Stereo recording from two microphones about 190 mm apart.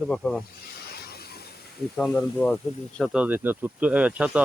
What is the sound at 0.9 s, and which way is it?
Hiss, 55° left (ahead or behind).